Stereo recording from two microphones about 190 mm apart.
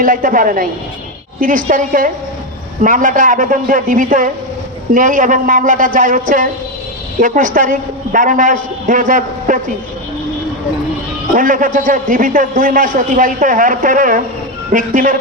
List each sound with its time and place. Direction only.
0.0 s a man's voice: 45° right (ahead or behind)
11.3 s a man's voice: 45° right (ahead or behind)